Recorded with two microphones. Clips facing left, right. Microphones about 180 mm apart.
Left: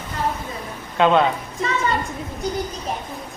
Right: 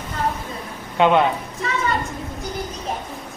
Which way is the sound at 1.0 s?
15° right (ahead or behind).